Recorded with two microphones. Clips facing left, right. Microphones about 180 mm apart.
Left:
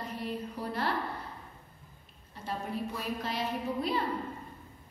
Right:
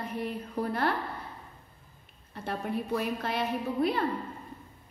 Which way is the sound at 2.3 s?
60° right (ahead or behind).